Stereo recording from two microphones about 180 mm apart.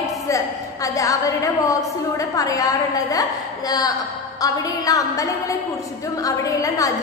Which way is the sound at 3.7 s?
20° left (ahead or behind).